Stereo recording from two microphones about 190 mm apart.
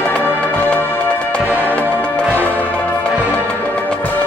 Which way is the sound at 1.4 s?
10° right (ahead or behind).